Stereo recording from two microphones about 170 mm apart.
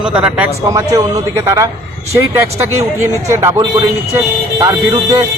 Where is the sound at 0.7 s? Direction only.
20° right (ahead or behind).